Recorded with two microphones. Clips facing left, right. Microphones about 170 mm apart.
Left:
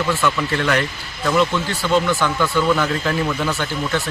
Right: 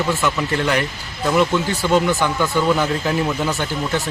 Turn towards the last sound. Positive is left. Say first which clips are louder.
# even
turn(degrees=-15)  # may be behind; listen again after turning